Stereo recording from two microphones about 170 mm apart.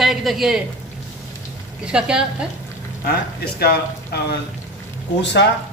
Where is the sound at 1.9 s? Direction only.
5° right (ahead or behind).